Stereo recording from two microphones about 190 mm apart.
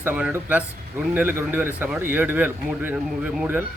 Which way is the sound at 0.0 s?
10° right (ahead or behind).